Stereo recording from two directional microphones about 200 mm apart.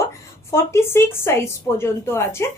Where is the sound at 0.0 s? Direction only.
15° left (ahead or behind).